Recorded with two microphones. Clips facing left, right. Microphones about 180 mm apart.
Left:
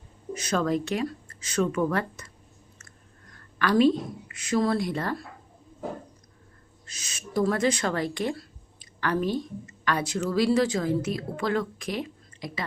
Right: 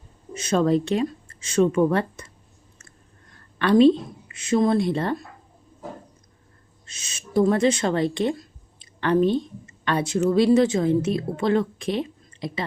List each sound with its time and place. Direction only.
0.3 s speech: 25° right (ahead or behind)
3.6 s speech: 25° right (ahead or behind)
6.8 s speech: 25° right (ahead or behind)